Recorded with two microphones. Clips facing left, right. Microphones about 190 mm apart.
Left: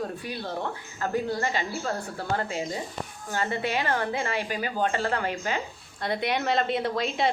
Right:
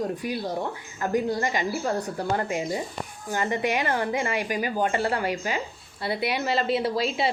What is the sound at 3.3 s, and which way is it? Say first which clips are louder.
A woman's voice: right 3 dB; 15° right (ahead or behind).